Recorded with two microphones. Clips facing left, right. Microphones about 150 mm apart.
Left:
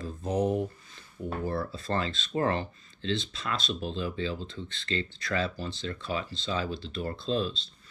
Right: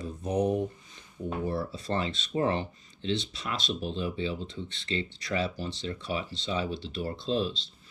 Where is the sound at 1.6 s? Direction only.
15° right (ahead or behind).